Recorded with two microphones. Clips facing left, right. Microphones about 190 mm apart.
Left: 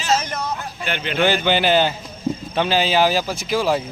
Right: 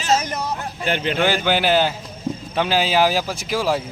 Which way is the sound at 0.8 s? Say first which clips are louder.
Right 4 dB; 35° right (ahead or behind).